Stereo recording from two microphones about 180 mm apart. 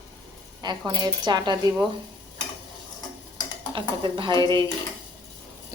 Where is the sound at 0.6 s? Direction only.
25° right (ahead or behind).